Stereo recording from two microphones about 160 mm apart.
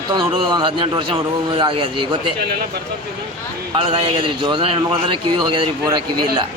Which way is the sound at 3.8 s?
35° right (ahead or behind).